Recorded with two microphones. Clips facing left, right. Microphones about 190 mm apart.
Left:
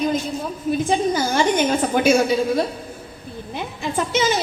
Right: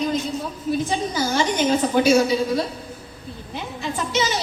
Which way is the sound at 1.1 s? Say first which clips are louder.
Left 2 dB; 50° left (ahead or behind).